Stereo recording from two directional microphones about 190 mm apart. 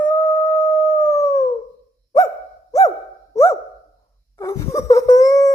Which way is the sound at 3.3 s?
15° left (ahead or behind).